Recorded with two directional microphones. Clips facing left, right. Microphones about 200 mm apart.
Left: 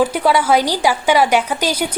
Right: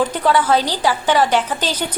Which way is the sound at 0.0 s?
10° left (ahead or behind).